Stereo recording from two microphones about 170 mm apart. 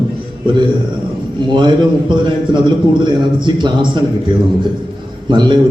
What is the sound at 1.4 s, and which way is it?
A man's voice, 25° right (ahead or behind).